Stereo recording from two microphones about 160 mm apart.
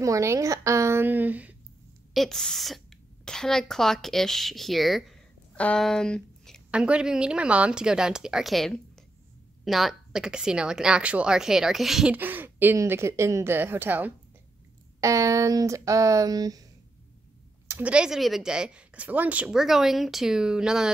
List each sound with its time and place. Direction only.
0.0 s a woman's voice: 20° right (ahead or behind)
2.1 s a woman's voice: 5° left (ahead or behind)
6.7 s a woman's voice: 5° right (ahead or behind); by 16.6 s 25° right (ahead or behind)
17.6 s a woman's voice: 10° right (ahead or behind)